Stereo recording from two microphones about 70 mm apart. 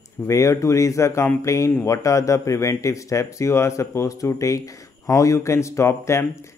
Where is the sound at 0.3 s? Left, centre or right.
Left.